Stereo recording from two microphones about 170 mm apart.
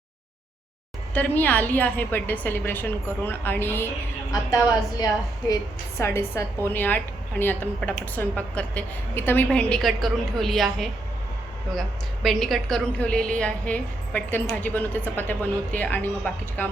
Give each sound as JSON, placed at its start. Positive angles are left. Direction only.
{"t": 1.1, "sound": "a woman's voice", "side_deg": 10}